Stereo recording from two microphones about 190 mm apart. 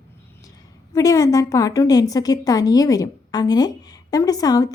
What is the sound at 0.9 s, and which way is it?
A woman's voice, 15° left (ahead or behind).